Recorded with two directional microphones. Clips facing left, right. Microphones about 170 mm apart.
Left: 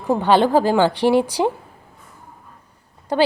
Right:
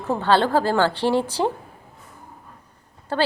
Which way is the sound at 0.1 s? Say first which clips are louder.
Left 4 dB; 15° left (ahead or behind).